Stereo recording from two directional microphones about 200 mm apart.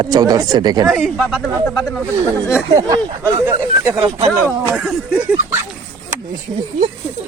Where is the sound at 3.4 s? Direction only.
15° right (ahead or behind).